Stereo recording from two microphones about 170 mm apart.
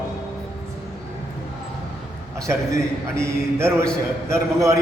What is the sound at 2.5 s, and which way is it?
A man's voice, 15° right (ahead or behind).